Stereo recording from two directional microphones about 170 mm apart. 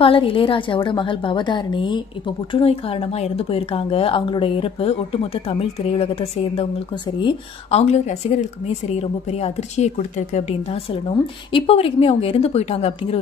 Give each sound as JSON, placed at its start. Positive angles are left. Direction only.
{"t": 0.0, "sound": "a woman's voice", "side_deg": 30}
{"t": 7.8, "sound": "a woman's voice", "side_deg": 40}